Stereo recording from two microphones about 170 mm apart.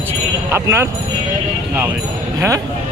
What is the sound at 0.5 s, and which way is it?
Speech, 15° right (ahead or behind).